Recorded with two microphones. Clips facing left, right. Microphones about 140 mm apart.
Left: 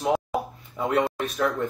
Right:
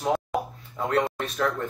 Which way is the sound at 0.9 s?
5° left (ahead or behind).